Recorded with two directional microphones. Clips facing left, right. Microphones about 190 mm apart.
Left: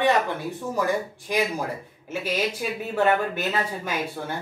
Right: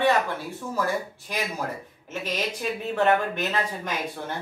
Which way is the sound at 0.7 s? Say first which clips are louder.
Left 2 dB; 15° left (ahead or behind).